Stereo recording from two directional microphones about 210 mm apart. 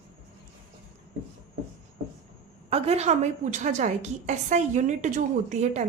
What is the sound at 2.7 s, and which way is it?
A woman's voice, 30° right (ahead or behind).